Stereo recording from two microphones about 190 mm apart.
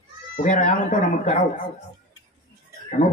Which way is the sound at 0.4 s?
40° left (ahead or behind).